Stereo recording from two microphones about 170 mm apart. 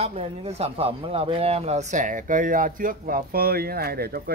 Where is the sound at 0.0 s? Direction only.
35° right (ahead or behind).